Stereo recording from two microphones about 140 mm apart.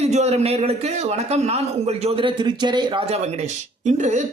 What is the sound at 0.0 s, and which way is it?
A man's voice, 50° right (ahead or behind).